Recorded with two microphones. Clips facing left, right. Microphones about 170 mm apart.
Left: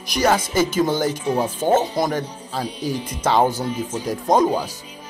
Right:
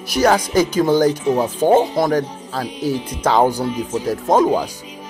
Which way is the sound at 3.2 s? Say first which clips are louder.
Right 3 dB; 15° right (ahead or behind).